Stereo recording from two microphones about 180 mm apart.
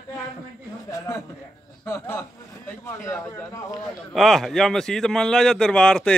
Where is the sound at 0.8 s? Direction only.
15° left (ahead or behind).